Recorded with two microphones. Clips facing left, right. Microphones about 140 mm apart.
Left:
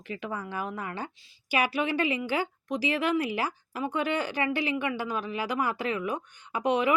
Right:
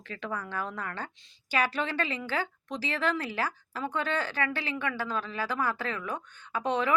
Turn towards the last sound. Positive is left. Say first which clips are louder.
# left 3 dB
turn(degrees=15)  # may be behind; listen again after turning